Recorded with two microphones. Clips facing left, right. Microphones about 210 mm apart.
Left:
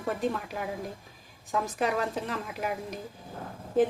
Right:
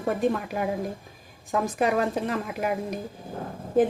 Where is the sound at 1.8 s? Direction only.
55° right (ahead or behind).